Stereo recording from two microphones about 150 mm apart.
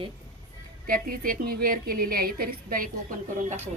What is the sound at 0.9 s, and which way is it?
A woman's voice, 70° right (ahead or behind).